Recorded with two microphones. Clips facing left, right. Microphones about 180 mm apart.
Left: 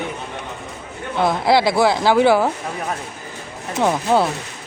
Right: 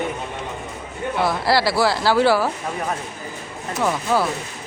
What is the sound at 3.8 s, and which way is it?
Speech, 25° left (ahead or behind).